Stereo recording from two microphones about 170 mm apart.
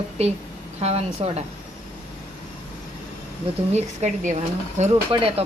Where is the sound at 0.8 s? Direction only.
40° right (ahead or behind).